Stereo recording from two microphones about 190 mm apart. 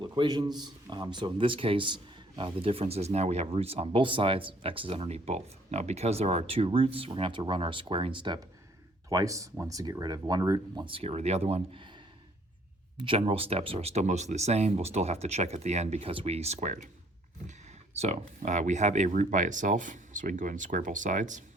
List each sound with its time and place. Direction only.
0.0 s a man's voice: 25° right (ahead or behind)
13.0 s speech: 30° right (ahead or behind)
17.9 s speech: 35° right (ahead or behind)